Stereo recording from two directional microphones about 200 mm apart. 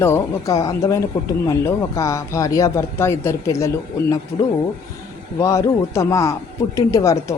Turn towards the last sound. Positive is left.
turn(degrees=15)  # may be behind; listen again after turning